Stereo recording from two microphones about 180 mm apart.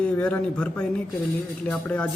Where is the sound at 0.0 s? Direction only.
5° left (ahead or behind).